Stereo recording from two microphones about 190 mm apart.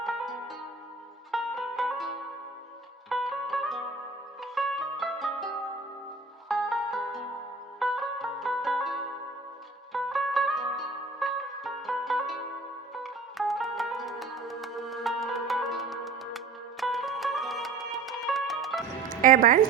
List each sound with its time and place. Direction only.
0.0 s music: centre (ahead or behind)
3.1 s music: centre (ahead or behind)
6.5 s music: centre (ahead or behind)
19.2 s speech: 45° right (ahead or behind)